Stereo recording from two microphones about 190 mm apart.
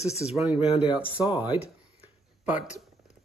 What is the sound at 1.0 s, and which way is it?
Speech, 25° left (ahead or behind).